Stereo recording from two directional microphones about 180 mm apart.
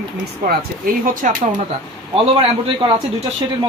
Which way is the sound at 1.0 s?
50° right (ahead or behind).